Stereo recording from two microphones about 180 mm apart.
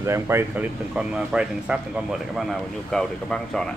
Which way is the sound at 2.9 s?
5° left (ahead or behind).